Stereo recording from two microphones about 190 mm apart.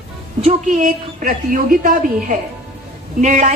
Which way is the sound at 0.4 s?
45° right (ahead or behind).